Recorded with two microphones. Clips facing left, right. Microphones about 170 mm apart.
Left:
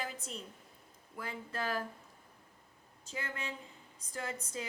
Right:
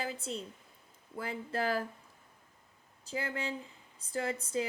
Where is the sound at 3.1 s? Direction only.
30° right (ahead or behind).